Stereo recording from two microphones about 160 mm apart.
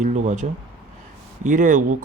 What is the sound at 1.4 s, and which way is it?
Speech, 55° right (ahead or behind).